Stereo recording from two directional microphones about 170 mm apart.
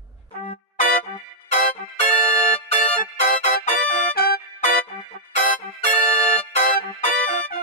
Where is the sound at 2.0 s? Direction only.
5° left (ahead or behind).